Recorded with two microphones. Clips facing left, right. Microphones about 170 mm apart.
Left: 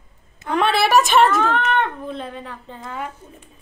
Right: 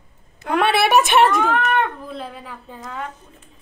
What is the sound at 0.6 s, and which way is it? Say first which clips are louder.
Speech: even; centre (ahead or behind).